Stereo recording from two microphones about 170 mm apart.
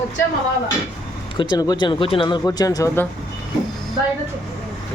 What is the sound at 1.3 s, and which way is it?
Speech, 25° left (ahead or behind).